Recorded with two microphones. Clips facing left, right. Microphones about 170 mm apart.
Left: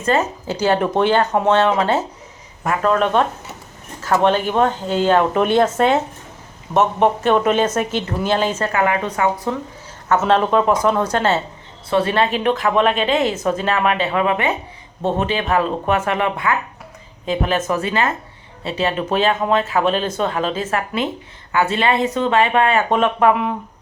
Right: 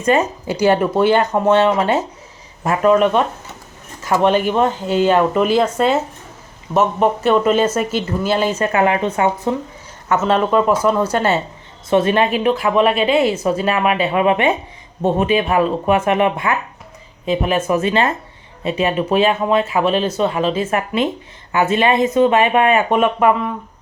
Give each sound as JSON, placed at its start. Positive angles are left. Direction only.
{"t": 0.0, "sound": "speech", "side_deg": -15}
{"t": 8.6, "sound": "speech", "side_deg": -25}
{"t": 10.2, "sound": "speech", "side_deg": -5}
{"t": 17.2, "sound": "speech", "side_deg": -10}